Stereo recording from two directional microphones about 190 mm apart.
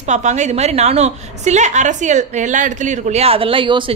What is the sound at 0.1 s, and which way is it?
A woman's voice, 40° right (ahead or behind).